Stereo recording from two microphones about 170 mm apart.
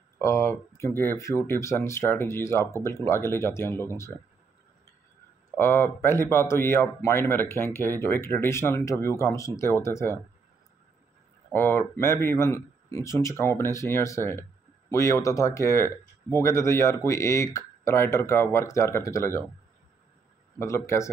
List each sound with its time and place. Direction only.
0.2 s speech: 15° left (ahead or behind)
5.6 s speech: 15° left (ahead or behind)
11.5 s speech: 15° left (ahead or behind)
20.5 s speech: 15° left (ahead or behind)